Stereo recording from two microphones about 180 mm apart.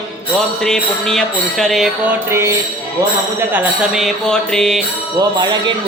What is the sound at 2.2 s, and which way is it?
Music, 15° right (ahead or behind).